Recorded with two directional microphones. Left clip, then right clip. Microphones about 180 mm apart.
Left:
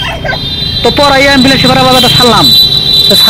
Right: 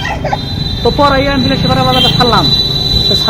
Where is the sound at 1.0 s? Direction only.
55° left (ahead or behind).